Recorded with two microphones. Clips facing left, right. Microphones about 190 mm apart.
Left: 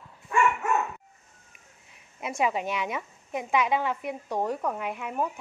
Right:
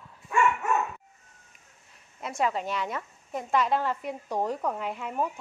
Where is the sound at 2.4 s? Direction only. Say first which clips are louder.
Left 1 dB; 15° left (ahead or behind).